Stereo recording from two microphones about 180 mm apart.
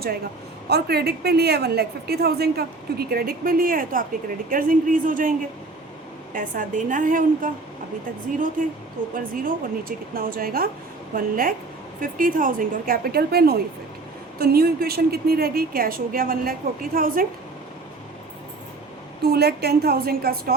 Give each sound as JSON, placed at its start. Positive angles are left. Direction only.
{"t": 0.7, "sound": "a woman's voice", "side_deg": -65}
{"t": 6.3, "sound": "a woman's voice", "side_deg": -50}
{"t": 9.1, "sound": "a woman's voice", "side_deg": -50}
{"t": 19.2, "sound": "a woman's voice", "side_deg": -65}